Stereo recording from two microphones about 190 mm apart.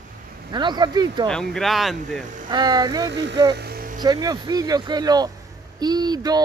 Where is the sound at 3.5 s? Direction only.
55° right (ahead or behind).